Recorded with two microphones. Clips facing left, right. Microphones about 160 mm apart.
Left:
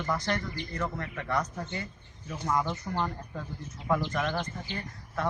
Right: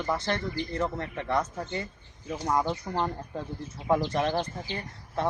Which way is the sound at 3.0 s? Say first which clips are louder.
Right 3 dB; 25° right (ahead or behind).